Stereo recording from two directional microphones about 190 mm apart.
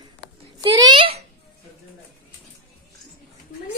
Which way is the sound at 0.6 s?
25° right (ahead or behind).